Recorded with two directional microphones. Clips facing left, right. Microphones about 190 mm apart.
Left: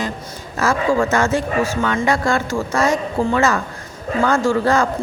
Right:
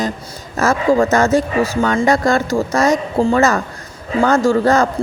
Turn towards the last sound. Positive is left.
turn(degrees=-40)  # may be behind; listen again after turning